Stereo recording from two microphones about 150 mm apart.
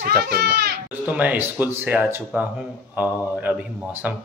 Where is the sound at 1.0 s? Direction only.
10° right (ahead or behind).